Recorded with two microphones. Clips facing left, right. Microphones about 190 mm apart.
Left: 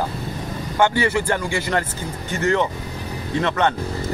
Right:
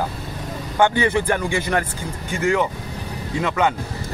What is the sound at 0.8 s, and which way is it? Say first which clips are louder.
Speech: right 1 dB; 20° right (ahead or behind).